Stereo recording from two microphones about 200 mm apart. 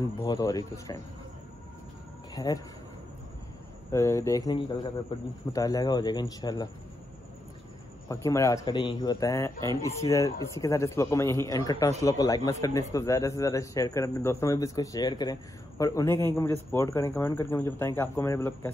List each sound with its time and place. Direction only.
0.2 s speech: 20° left (ahead or behind)
2.3 s speech: 20° left (ahead or behind)
3.9 s speech: 15° left (ahead or behind)
8.1 s speech: 15° left (ahead or behind)